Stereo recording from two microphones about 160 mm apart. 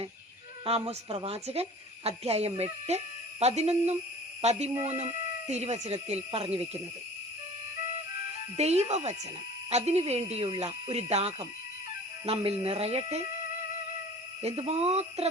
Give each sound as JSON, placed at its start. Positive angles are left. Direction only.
{"t": 0.6, "sound": "speech", "side_deg": -35}
{"t": 8.5, "sound": "speech", "side_deg": -40}
{"t": 14.4, "sound": "speech", "side_deg": -40}